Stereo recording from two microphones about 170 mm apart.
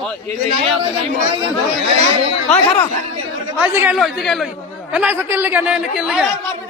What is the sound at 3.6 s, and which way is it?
Speech, 10° right (ahead or behind).